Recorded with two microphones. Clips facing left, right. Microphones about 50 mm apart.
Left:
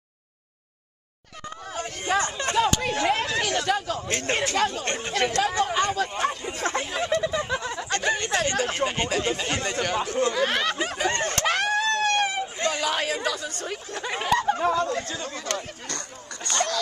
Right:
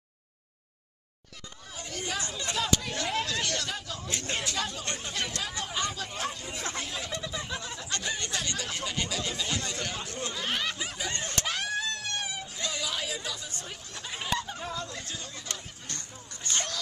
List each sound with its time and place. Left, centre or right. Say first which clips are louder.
2.0 s speech: left 10 dB; left
2.5 s chatter: left 7 dB; left
3.6 s speech: left 11 dB; left
6.4 s chatter: left 9 dB; left
6.9 s speech: left 11 dB; left
9.8 s speech: left 11 dB; left
13.7 s speech: left 12 dB; left